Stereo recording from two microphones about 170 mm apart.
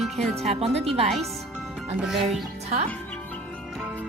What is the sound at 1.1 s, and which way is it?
Music, centre (ahead or behind).